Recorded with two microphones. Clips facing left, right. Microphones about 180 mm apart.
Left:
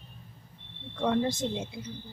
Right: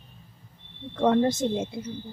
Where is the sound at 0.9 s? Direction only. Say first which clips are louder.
Right 6 dB; 50° right (ahead or behind).